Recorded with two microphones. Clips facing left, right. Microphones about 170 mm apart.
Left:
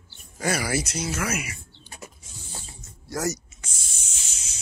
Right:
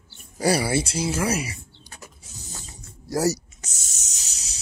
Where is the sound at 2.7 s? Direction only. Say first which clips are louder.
Right 6 dB; 35° right (ahead or behind).